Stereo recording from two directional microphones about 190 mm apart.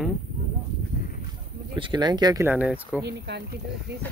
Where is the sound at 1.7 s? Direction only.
25° right (ahead or behind).